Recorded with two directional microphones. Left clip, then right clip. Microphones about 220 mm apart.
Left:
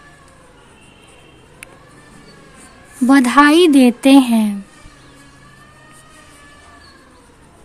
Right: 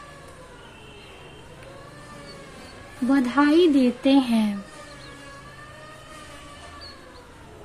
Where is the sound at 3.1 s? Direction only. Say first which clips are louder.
Left 10 dB; 45° left (ahead or behind).